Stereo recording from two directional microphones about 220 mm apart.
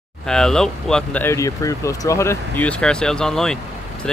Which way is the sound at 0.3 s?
5° left (ahead or behind).